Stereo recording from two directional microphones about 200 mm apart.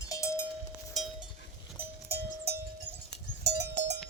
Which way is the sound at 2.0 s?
50° right (ahead or behind).